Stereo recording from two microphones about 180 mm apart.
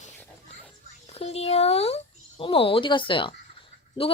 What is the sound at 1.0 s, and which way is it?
Speech, 35° left (ahead or behind).